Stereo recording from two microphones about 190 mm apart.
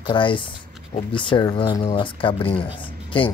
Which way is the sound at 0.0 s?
25° left (ahead or behind).